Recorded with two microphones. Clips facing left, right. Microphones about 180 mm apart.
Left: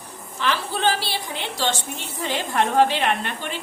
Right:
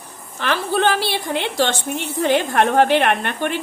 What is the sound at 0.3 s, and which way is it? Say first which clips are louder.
A woman's voice: right 5 dB; 55° right (ahead or behind).